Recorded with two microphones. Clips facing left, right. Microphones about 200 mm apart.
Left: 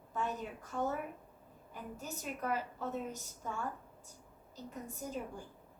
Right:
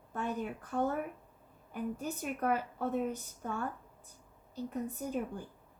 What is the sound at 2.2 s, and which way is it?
A woman's voice, 55° right (ahead or behind).